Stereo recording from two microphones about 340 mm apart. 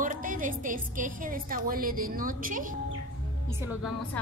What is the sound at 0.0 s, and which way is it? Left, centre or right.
A woman's voice, right.